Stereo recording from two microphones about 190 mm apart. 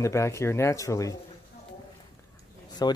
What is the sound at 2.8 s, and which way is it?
Speech, 20° left (ahead or behind).